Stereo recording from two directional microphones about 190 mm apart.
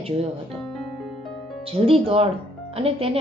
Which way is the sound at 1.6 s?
30° right (ahead or behind).